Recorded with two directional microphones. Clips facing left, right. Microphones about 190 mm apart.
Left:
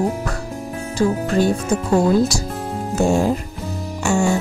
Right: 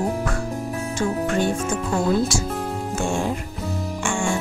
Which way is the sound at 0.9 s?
35° left (ahead or behind).